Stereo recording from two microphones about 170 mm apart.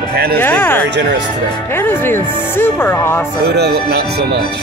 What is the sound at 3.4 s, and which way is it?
Speech, 75° right (ahead or behind).